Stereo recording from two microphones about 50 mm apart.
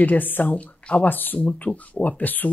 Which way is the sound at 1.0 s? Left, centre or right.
Left.